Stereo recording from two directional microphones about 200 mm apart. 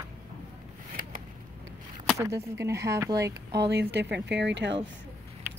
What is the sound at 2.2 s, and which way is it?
Speech, 15° right (ahead or behind).